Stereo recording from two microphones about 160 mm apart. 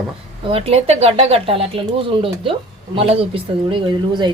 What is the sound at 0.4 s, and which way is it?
Speech, 35° right (ahead or behind).